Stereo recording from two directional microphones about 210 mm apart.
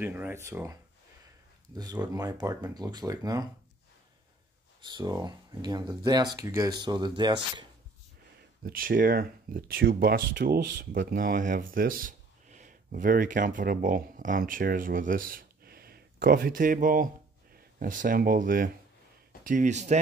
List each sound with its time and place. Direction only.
0.0 s speech: 10° right (ahead or behind)
1.8 s speech: 20° right (ahead or behind)
4.8 s speech: 20° right (ahead or behind)
8.6 s speech: 45° right (ahead or behind)